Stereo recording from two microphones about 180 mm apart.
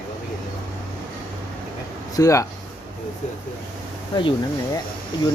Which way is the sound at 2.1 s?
20° left (ahead or behind).